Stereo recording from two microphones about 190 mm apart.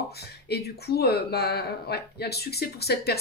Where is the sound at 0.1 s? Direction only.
60° left (ahead or behind).